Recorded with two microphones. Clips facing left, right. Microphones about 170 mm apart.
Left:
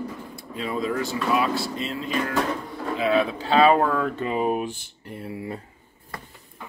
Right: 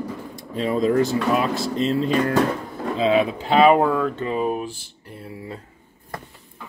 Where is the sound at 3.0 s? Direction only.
20° right (ahead or behind).